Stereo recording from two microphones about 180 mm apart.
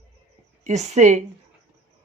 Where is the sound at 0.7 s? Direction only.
40° right (ahead or behind).